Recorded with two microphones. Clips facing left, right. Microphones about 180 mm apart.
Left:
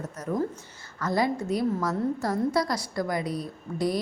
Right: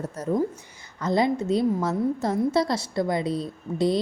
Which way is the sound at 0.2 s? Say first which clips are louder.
Right 4 dB; 30° right (ahead or behind).